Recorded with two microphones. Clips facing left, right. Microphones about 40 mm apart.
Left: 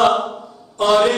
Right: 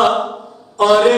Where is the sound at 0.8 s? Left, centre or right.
Right.